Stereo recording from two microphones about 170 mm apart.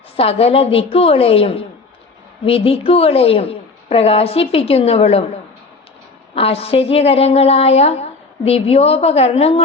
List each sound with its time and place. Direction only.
0.2 s a woman's voice: 35° left (ahead or behind)
6.3 s a woman's voice: 35° left (ahead or behind)